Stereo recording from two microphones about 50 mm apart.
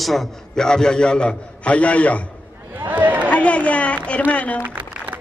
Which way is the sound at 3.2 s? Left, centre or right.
Left.